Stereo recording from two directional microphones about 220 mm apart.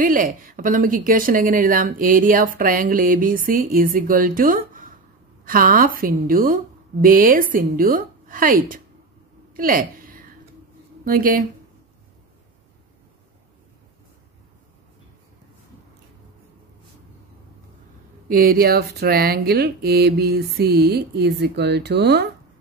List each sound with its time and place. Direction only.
0.0 s speech: 40° right (ahead or behind)
9.5 s a sound: 40° right (ahead or behind)
11.1 s speech: 40° right (ahead or behind)
18.3 s speech: 45° right (ahead or behind)